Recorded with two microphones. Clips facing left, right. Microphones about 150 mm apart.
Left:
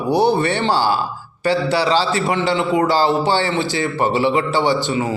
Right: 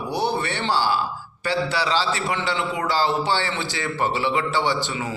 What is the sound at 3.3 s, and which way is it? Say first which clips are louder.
Speech: left 7 dB; 25° left (ahead or behind).